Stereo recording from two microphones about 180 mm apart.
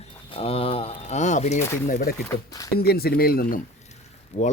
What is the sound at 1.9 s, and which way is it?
Speech, 55° left (ahead or behind).